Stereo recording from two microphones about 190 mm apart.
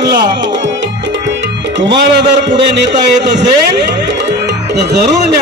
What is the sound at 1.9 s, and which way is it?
Speech, 65° right (ahead or behind).